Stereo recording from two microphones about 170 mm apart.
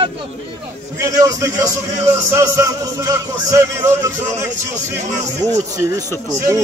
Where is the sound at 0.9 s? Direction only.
15° right (ahead or behind).